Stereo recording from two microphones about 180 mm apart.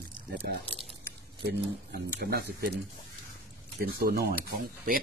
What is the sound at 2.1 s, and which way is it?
Speech, 65° right (ahead or behind).